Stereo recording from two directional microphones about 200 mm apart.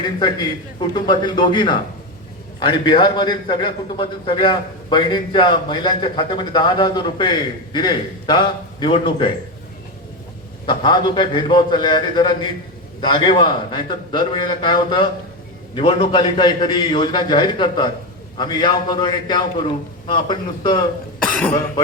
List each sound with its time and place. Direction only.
0.0 s a man's voice: 20° left (ahead or behind)
10.7 s a man's voice: 20° left (ahead or behind)